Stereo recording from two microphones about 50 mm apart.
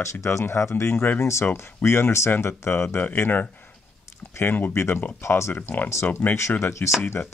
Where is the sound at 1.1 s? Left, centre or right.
Left.